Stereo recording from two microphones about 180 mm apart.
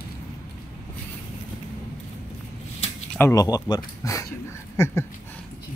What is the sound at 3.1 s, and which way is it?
Speech, 15° left (ahead or behind).